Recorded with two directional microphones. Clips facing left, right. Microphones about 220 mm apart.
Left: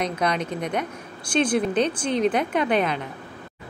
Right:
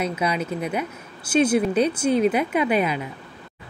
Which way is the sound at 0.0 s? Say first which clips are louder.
Even; 5° right (ahead or behind).